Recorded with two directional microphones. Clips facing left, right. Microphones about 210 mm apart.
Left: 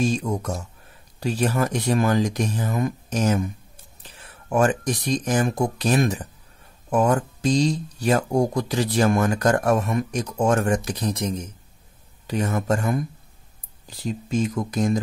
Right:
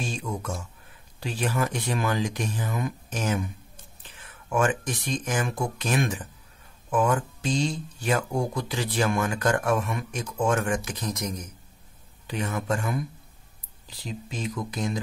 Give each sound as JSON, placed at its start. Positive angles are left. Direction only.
{"t": 0.0, "sound": "speech", "side_deg": 40}
{"t": 12.3, "sound": "speech", "side_deg": 40}